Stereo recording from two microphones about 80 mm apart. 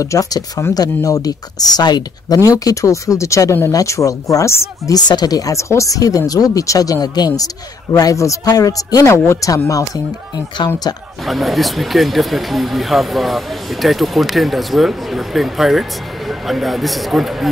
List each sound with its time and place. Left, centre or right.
0.0 s speech: left
4.9 s speech: left
9.0 s speech: left
11.2 s speech: centre